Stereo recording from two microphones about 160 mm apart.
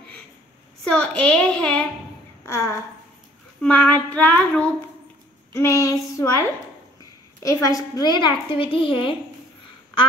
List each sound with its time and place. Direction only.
0.8 s child singing: 5° left (ahead or behind)
2.4 s child singing: 15° left (ahead or behind)
5.5 s a woman's voice: 15° left (ahead or behind)
7.4 s a woman's voice: 20° left (ahead or behind)